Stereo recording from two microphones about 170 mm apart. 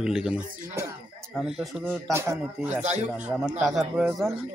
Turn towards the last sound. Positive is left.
turn(degrees=0)  # may be behind; listen again after turning